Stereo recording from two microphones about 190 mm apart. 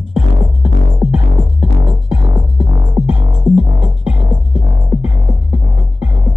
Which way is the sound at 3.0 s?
5° right (ahead or behind).